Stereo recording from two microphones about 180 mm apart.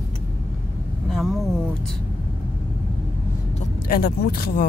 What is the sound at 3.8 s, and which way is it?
Speech, 55° left (ahead or behind).